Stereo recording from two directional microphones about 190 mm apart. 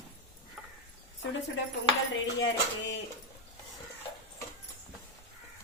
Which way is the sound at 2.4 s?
75° left (ahead or behind).